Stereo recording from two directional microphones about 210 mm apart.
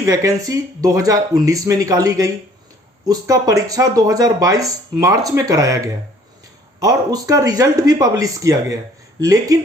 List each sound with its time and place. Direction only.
0.0 s speech: 15° right (ahead or behind)